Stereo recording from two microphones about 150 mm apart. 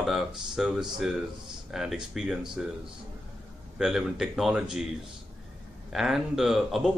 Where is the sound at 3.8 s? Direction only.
Centre (ahead or behind).